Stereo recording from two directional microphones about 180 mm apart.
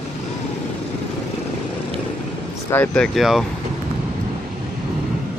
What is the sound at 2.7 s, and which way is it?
Speech, 10° left (ahead or behind).